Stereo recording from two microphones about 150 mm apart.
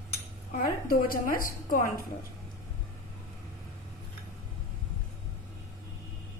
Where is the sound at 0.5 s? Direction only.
80° left.